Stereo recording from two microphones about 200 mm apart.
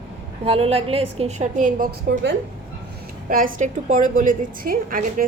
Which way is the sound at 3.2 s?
45° right (ahead or behind).